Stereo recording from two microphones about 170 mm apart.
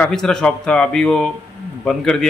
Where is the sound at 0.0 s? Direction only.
5° left (ahead or behind).